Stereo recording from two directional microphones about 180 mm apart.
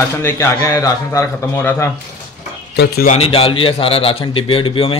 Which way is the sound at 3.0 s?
35° left (ahead or behind).